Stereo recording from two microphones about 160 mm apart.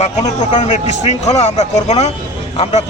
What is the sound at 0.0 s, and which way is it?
A man's voice, 45° left (ahead or behind).